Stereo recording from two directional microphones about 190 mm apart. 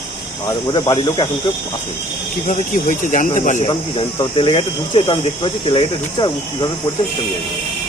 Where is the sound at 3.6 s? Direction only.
30° left (ahead or behind).